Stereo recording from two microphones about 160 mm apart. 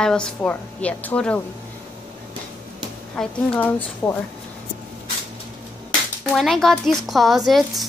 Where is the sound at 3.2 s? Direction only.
10° left (ahead or behind).